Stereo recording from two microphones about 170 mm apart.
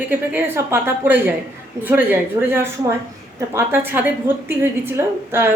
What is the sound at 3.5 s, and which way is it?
A woman's voice, 15° right (ahead or behind).